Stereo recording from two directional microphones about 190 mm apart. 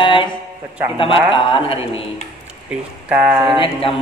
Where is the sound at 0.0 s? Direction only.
25° left (ahead or behind).